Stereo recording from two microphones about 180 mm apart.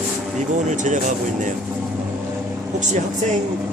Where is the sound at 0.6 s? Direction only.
45° right (ahead or behind).